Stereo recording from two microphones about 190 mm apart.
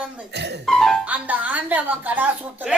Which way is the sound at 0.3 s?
60° right (ahead or behind).